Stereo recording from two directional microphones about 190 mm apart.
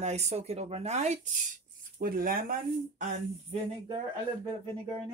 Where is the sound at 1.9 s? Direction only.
50° right (ahead or behind).